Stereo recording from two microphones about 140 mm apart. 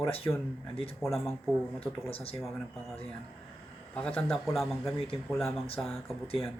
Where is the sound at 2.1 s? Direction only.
45° left (ahead or behind).